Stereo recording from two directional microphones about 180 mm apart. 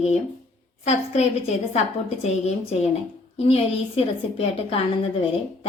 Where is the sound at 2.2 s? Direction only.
40° left (ahead or behind).